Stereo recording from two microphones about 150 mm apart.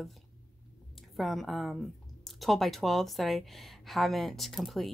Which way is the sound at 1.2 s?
Centre (ahead or behind).